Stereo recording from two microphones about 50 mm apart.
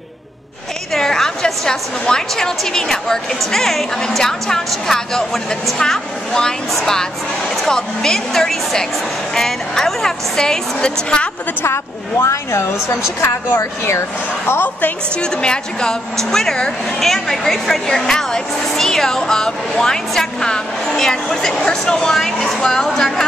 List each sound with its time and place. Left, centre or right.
0.9 s speech: centre
11.6 s a woman's voice: left
15.1 s speech: centre